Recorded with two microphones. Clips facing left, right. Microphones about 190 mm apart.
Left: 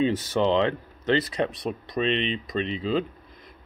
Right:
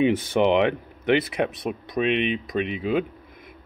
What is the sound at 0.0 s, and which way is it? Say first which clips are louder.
Speech: right 3 dB; 15° right (ahead or behind).